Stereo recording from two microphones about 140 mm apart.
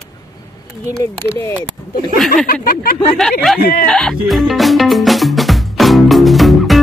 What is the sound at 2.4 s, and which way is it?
Speech, 90° left.